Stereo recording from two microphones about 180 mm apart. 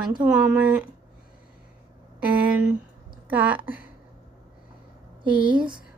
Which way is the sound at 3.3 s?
10° right (ahead or behind).